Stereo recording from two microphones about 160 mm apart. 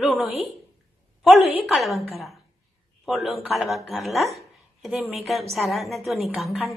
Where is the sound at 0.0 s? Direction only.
Centre (ahead or behind).